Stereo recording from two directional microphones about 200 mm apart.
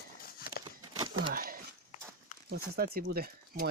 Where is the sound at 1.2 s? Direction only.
45° right (ahead or behind).